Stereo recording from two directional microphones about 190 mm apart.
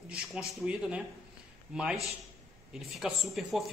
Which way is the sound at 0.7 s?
5° right (ahead or behind).